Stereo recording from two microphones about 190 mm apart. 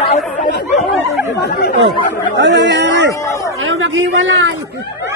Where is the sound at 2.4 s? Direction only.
65° right (ahead or behind).